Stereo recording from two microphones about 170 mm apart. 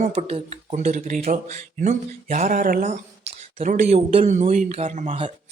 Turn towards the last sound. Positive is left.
turn(degrees=-35)  # may be behind; listen again after turning